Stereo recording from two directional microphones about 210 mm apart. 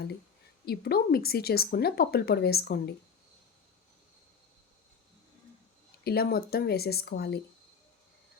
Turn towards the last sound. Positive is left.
turn(degrees=50)  # may be behind; listen again after turning